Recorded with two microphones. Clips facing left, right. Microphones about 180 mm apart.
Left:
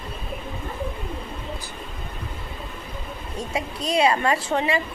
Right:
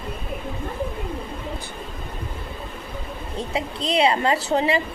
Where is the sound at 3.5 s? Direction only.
25° right (ahead or behind).